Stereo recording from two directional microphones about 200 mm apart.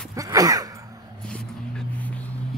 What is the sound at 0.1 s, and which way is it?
Sigh, 15° right (ahead or behind).